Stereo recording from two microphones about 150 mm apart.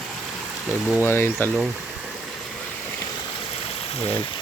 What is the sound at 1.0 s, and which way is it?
Speech, 15° left (ahead or behind).